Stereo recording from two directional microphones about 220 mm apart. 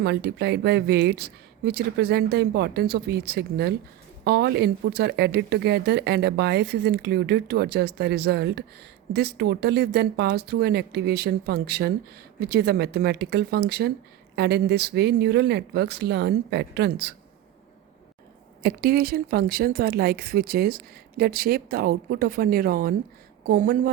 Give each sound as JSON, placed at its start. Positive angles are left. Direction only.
{"t": 0.0, "sound": "speech", "side_deg": -45}
{"t": 18.6, "sound": "a woman's voice", "side_deg": -45}